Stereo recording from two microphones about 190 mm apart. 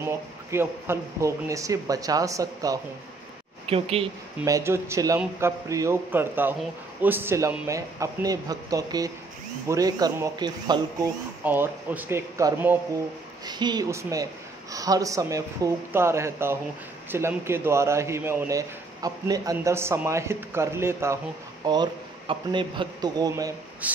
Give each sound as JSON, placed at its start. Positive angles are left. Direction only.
{"t": 0.0, "sound": "a man's voice", "side_deg": -15}
{"t": 3.6, "sound": "speech", "side_deg": -30}
{"t": 4.5, "sound": "a man's voice", "side_deg": -15}
{"t": 11.4, "sound": "a man's voice", "side_deg": -10}
{"t": 22.3, "sound": "speech", "side_deg": -25}
{"t": 23.8, "sound": "a man's voice", "side_deg": -10}